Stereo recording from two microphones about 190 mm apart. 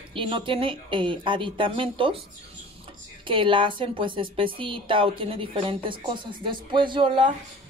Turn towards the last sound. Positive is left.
turn(degrees=-25)  # may be behind; listen again after turning